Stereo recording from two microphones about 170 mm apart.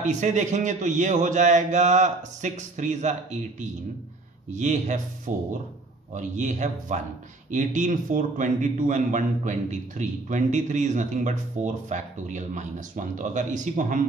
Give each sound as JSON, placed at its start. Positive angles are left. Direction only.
{"t": 0.0, "sound": "a man's voice", "side_deg": -45}
{"t": 4.5, "sound": "a man's voice", "side_deg": -45}